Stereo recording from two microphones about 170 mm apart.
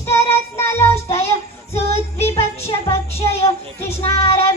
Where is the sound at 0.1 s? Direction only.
15° left (ahead or behind).